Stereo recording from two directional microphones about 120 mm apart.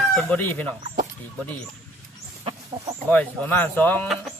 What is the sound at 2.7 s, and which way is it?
Speech, 30° right (ahead or behind).